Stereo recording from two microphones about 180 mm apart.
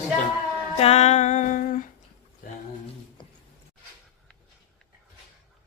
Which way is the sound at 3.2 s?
25° left (ahead or behind).